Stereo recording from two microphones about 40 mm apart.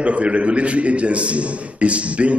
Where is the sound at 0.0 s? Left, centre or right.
Right.